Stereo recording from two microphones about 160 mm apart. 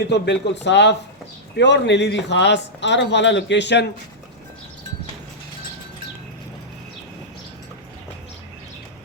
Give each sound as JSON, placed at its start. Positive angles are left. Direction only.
{"t": 0.1, "sound": "a man's voice", "side_deg": 90}